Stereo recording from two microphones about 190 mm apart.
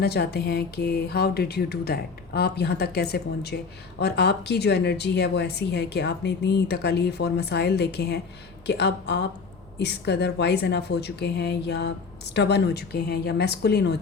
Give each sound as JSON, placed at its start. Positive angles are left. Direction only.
{"t": 0.0, "sound": "speech", "side_deg": 60}